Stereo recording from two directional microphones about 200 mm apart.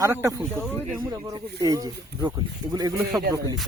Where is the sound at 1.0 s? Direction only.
20° right (ahead or behind).